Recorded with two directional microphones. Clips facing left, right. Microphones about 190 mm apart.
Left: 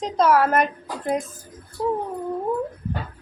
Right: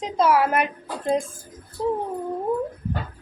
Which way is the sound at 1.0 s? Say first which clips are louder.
Right 2 dB; 30° right (ahead or behind).